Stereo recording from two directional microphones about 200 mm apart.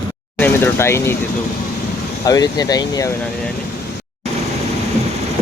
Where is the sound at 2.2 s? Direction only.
20° left (ahead or behind).